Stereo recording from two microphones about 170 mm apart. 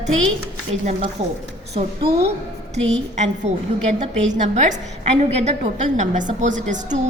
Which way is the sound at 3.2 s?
40° right (ahead or behind).